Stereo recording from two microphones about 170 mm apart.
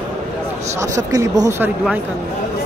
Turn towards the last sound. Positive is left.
turn(degrees=-20)  # may be behind; listen again after turning